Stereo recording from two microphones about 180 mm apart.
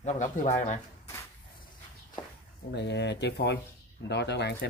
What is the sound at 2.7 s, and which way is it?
Speech, 70° left (ahead or behind).